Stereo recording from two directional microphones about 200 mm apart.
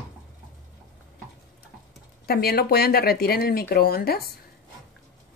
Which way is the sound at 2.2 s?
50° left (ahead or behind).